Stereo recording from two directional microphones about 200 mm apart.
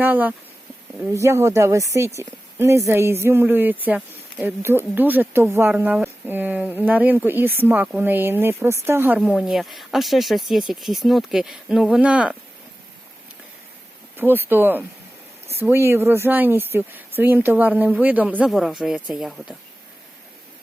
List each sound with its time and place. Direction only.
0.0 s speech: 10° right (ahead or behind)
14.2 s speech: 10° right (ahead or behind)